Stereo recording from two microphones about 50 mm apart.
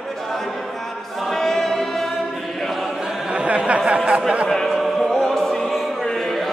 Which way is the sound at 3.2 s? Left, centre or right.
Right.